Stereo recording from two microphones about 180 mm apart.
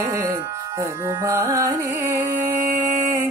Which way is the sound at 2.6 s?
50° right (ahead or behind).